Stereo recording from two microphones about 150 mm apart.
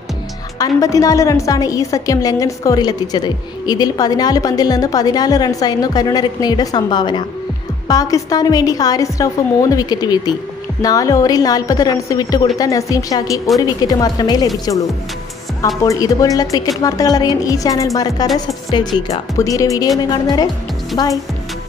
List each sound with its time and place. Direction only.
0.6 s a woman's voice: 20° left (ahead or behind)
15.6 s a woman's voice: 20° left (ahead or behind)
19.3 s a woman's voice: 20° left (ahead or behind)